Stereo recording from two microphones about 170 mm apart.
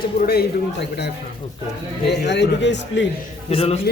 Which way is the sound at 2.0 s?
90° left.